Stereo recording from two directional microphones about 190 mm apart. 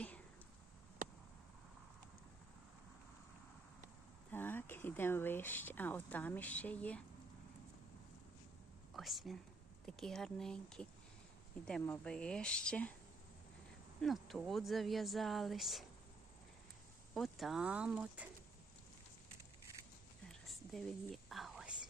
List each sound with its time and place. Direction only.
1.0 s a sound: 45° right (ahead or behind)
4.3 s speech: 10° left (ahead or behind)
8.9 s speech: centre (ahead or behind)
14.0 s speech: centre (ahead or behind)
17.2 s speech: centre (ahead or behind)
20.4 s whispering: centre (ahead or behind)